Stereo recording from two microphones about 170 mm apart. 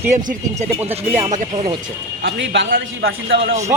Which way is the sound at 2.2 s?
75° right (ahead or behind).